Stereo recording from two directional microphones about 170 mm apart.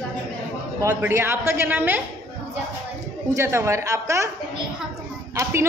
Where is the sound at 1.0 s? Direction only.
15° right (ahead or behind).